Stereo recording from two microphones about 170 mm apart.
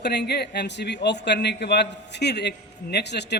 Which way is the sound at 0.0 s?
75° left (ahead or behind).